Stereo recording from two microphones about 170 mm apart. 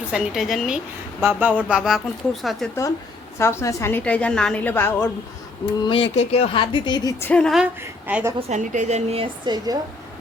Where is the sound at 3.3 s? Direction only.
15° left (ahead or behind).